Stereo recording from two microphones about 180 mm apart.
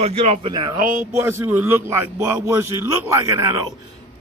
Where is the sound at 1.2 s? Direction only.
15° right (ahead or behind).